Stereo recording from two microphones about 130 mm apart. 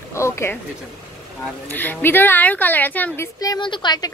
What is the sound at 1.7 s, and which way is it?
A woman's voice, 15° left (ahead or behind).